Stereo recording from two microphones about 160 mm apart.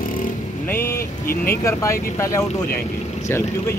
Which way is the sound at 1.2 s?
70° left (ahead or behind).